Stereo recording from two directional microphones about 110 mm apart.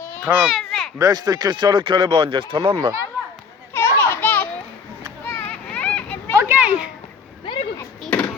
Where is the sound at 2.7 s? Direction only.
30° right (ahead or behind).